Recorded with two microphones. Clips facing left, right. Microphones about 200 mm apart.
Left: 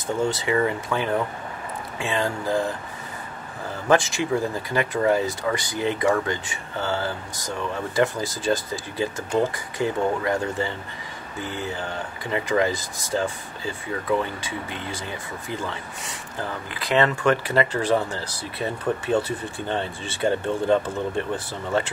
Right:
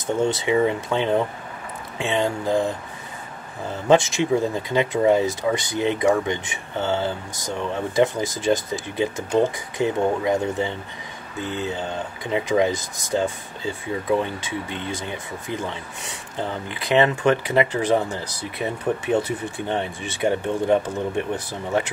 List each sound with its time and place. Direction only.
0.0 s speech: 20° right (ahead or behind)
3.9 s speech: 20° right (ahead or behind)